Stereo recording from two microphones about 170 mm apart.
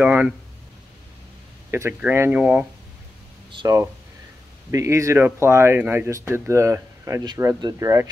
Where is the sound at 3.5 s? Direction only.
25° right (ahead or behind).